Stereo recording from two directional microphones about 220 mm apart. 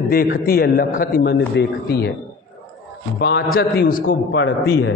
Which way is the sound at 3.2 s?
50° left (ahead or behind).